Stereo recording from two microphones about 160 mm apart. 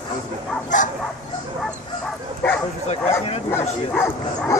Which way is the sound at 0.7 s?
50° left (ahead or behind).